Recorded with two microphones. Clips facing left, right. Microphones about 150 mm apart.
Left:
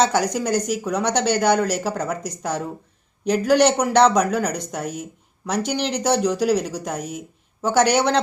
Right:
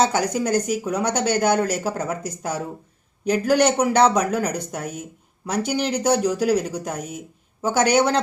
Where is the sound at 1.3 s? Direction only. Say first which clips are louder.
Left 1 dB; 50° right (ahead or behind).